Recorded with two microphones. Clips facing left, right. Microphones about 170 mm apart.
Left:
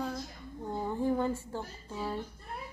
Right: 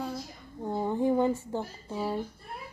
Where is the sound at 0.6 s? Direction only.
25° right (ahead or behind).